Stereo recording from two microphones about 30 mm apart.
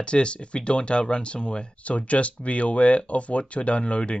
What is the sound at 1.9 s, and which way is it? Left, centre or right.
Speech, left.